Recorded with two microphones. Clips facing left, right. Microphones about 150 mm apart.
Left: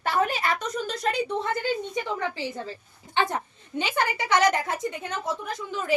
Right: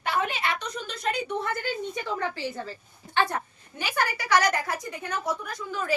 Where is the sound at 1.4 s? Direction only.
20° left (ahead or behind).